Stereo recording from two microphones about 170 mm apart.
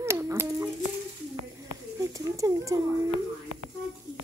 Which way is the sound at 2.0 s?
20° right (ahead or behind).